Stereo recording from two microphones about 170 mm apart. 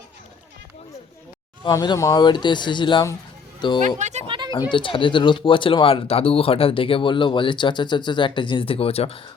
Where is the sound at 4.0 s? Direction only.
45° right (ahead or behind).